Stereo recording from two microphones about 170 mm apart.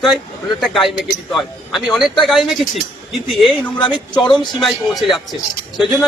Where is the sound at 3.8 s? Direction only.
30° left (ahead or behind).